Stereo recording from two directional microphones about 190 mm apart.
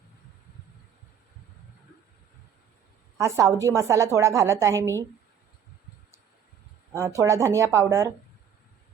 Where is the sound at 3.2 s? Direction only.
15° right (ahead or behind).